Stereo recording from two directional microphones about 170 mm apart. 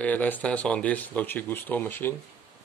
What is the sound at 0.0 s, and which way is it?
Speech, 10° left (ahead or behind).